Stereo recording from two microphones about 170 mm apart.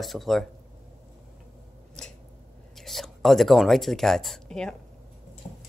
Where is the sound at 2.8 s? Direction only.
Centre (ahead or behind).